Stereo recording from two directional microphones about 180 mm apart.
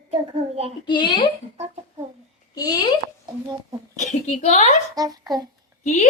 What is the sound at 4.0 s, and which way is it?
Speech, 40° left (ahead or behind).